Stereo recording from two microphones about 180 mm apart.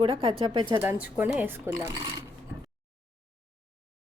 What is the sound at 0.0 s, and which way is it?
Speech, 30° right (ahead or behind).